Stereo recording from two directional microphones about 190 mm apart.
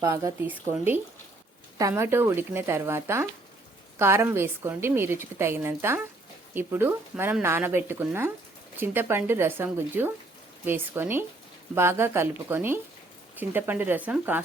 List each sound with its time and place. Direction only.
0.0 s a woman's voice: 15° right (ahead or behind)
1.8 s a woman's voice: 15° right (ahead or behind)